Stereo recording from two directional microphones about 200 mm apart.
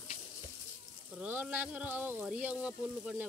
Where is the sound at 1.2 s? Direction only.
10° right (ahead or behind).